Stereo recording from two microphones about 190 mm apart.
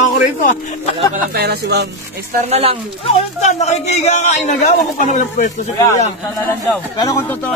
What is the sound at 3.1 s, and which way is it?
A man's voice, 35° left (ahead or behind).